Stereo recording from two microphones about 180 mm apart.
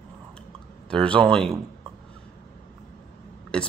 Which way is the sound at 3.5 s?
5° left (ahead or behind).